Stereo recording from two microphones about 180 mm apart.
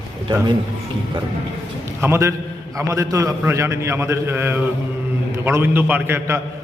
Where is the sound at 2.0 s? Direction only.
15° right (ahead or behind).